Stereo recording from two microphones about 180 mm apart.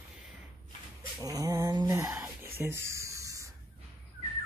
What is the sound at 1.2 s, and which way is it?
Speech, 20° right (ahead or behind).